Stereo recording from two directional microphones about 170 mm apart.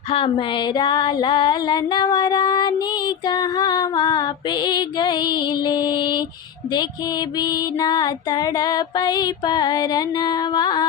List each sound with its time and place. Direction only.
0.1 s female singing: 35° left (ahead or behind)